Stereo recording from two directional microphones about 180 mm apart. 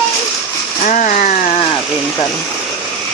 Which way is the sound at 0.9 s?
45° left (ahead or behind).